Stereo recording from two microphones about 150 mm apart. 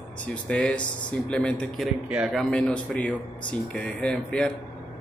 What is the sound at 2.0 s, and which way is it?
Speech, 5° right (ahead or behind).